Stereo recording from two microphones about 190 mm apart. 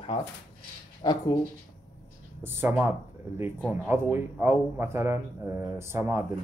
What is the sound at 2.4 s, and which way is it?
A man's voice, 10° right (ahead or behind).